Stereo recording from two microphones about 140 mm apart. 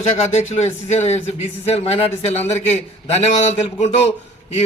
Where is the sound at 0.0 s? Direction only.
55° left (ahead or behind).